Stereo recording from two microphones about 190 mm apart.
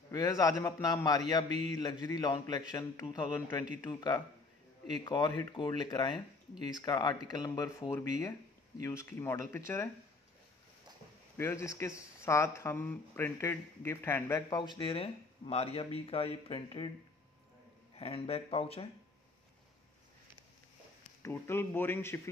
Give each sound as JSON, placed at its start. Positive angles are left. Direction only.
{"t": 0.1, "sound": "speech", "side_deg": 20}
{"t": 11.3, "sound": "speech", "side_deg": 15}
{"t": 17.9, "sound": "speech", "side_deg": 30}
{"t": 21.2, "sound": "speech", "side_deg": 10}